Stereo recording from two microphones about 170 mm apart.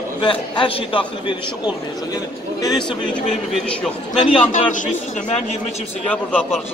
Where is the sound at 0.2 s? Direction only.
30° left (ahead or behind).